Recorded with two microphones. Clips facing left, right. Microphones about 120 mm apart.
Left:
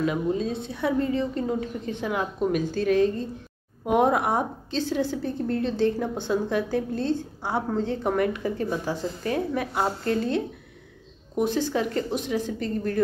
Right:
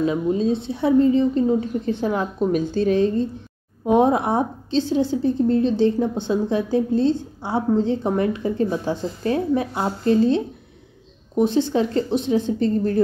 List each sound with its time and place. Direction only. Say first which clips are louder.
0.0 s a woman's voice: right 5 dB; 25° right (ahead or behind)
1.9 s a woman's voice: right 4 dB; 35° right (ahead or behind)